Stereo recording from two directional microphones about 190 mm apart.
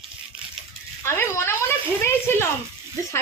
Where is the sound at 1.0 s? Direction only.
15° left (ahead or behind).